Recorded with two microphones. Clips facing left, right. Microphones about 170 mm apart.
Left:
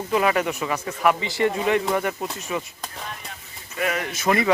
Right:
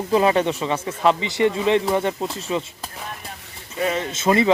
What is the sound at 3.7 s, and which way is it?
Speech, 25° right (ahead or behind).